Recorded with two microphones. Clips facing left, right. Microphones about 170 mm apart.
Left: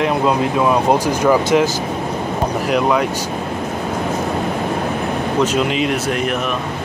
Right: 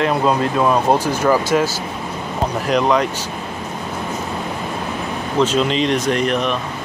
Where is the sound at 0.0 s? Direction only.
10° left (ahead or behind).